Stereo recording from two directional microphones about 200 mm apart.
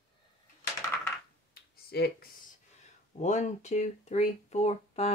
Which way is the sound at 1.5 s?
50° left (ahead or behind).